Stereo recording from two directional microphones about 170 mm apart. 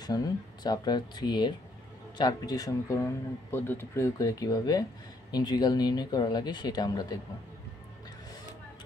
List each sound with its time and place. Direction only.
0.0 s speech: 25° left (ahead or behind)